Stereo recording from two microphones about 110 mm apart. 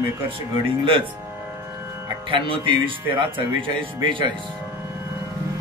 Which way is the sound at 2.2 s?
55° right (ahead or behind).